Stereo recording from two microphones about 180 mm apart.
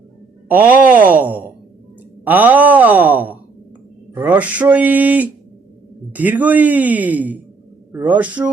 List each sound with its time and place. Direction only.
0.5 s speech: 10° right (ahead or behind)